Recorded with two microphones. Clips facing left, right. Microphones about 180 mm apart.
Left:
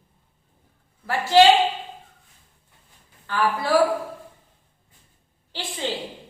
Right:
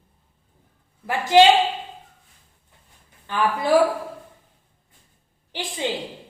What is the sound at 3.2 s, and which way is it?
Speech, 20° right (ahead or behind).